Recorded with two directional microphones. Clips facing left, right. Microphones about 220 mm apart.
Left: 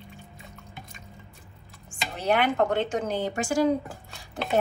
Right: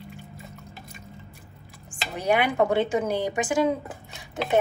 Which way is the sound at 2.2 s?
10° right (ahead or behind).